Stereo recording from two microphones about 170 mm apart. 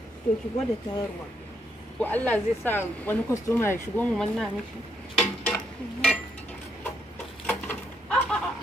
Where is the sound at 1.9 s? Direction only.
10° left (ahead or behind).